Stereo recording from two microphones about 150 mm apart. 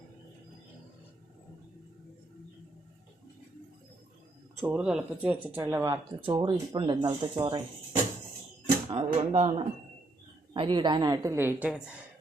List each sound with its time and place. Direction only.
4.6 s speech: 10° right (ahead or behind)
6.2 s speech: 35° right (ahead or behind)
8.9 s speech: 40° right (ahead or behind)
10.5 s a woman's voice: 35° right (ahead or behind); by 11.9 s 10° right (ahead or behind)